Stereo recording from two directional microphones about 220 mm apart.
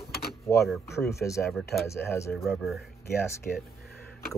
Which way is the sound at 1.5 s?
Centre (ahead or behind).